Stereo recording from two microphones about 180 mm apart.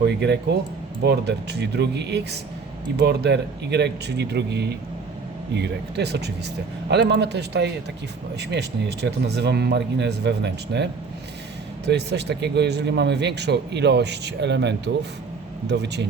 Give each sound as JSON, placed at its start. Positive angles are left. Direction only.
{"t": 0.0, "sound": "speech", "side_deg": -70}
{"t": 11.9, "sound": "speech", "side_deg": -70}